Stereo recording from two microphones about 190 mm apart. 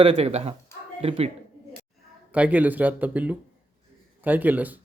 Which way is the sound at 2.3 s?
10° right (ahead or behind).